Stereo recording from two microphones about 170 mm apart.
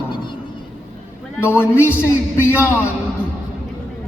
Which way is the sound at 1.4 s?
15° left (ahead or behind).